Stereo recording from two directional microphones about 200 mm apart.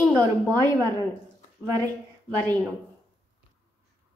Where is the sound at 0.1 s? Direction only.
10° left (ahead or behind).